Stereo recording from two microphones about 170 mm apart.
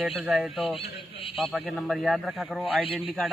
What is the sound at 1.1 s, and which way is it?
Speech, 35° left (ahead or behind).